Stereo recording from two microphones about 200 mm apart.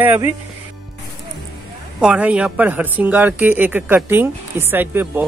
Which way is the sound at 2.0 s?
5° right (ahead or behind).